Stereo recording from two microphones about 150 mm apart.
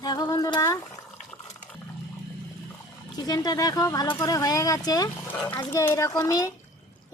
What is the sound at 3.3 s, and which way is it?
Speech, 25° left (ahead or behind).